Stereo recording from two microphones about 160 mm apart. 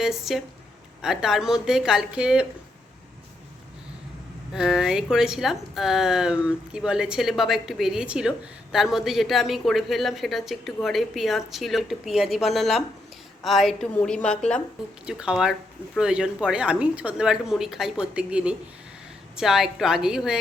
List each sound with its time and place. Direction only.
0.0 s speech: 5° right (ahead or behind)
4.5 s speech: 5° right (ahead or behind)
15.0 s speech: 5° right (ahead or behind)